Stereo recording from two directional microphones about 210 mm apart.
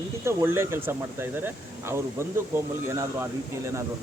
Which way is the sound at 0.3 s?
10° right (ahead or behind).